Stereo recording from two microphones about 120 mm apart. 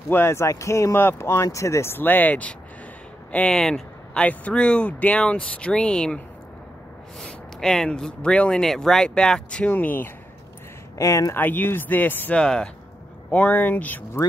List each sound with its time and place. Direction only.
0.1 s speech: 20° left (ahead or behind)
11.0 s speech: 25° left (ahead or behind)